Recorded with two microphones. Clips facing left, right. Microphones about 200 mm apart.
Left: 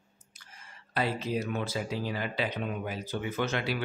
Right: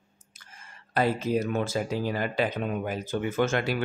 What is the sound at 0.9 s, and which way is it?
Speech, 45° right (ahead or behind).